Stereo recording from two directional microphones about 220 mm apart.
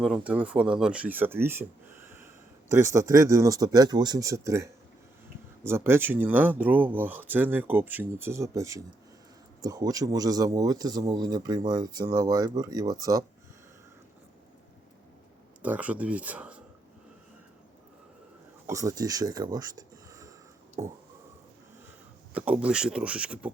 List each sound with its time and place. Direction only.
0.0 s speech: 5° right (ahead or behind)
15.6 s speech: 5° right (ahead or behind)
18.7 s speech: 15° right (ahead or behind)
22.4 s speech: 5° right (ahead or behind)